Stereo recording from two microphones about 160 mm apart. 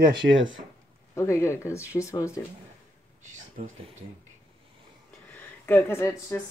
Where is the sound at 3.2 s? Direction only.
50° right (ahead or behind).